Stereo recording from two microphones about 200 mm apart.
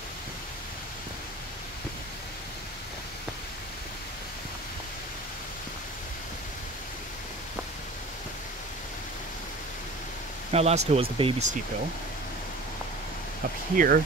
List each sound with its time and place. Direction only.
10.5 s speech: 30° right (ahead or behind)
13.7 s speech: 45° right (ahead or behind)